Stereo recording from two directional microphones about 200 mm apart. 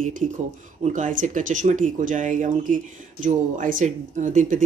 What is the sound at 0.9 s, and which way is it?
Speech, 40° right (ahead or behind).